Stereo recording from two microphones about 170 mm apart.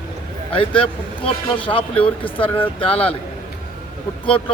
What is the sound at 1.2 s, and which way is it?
Speech, 30° left (ahead or behind).